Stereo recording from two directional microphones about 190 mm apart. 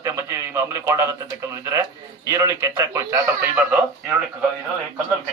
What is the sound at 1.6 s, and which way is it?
A man's voice, 15° right (ahead or behind).